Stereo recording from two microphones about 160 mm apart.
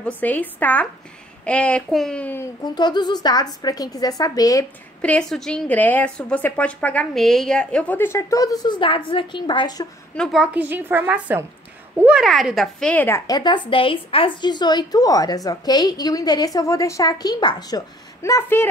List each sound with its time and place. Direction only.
0.0 s a woman's voice: 10° left (ahead or behind)
2.6 s a woman's voice: 25° left (ahead or behind)
5.0 s a woman's voice: 5° left (ahead or behind); by 9.8 s 30° left (ahead or behind)
10.1 s a woman's voice: centre (ahead or behind)
13.3 s a woman's voice: 30° left (ahead or behind)